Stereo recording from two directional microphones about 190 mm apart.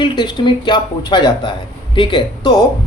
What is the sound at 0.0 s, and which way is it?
Speech, 25° left (ahead or behind).